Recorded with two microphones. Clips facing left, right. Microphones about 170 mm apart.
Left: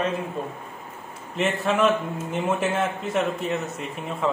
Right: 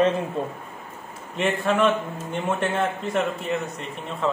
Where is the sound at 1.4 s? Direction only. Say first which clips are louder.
Even; centre (ahead or behind).